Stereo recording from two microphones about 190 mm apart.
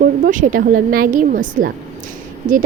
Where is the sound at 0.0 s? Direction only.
45° right (ahead or behind).